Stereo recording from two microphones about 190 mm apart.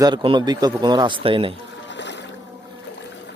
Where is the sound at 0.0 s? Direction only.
25° right (ahead or behind).